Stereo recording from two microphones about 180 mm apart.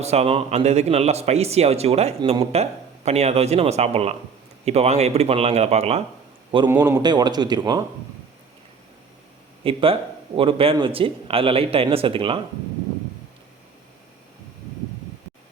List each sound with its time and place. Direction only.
0.0 s speech: 35° right (ahead or behind)
6.7 s a man's voice: 15° right (ahead or behind)
9.6 s speech: 30° right (ahead or behind)